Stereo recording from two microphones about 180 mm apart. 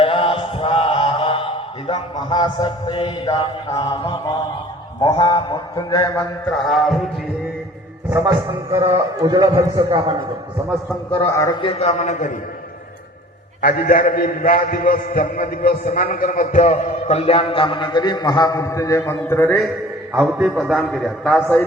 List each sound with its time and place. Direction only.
0.0 s chant: 30° left (ahead or behind)
1.9 s mantra: 25° left (ahead or behind)
6.7 s a man's voice: centre (ahead or behind)
9.1 s a man's voice: 20° right (ahead or behind)
11.2 s a man's voice: 15° left (ahead or behind)
11.6 s a man's voice: 35° left (ahead or behind)
13.6 s a man's voice: 55° left (ahead or behind); by 19.6 s 10° left (ahead or behind)
20.1 s a man's voice: centre (ahead or behind)